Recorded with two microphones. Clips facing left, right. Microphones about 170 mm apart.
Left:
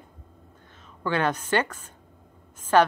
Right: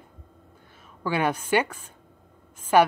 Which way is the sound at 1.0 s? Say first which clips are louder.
Even; 10° right (ahead or behind).